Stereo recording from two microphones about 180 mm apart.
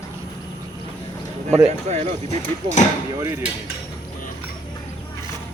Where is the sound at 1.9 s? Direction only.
40° right (ahead or behind).